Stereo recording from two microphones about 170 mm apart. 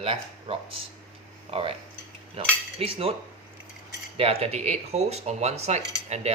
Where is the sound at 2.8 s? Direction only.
35° right (ahead or behind).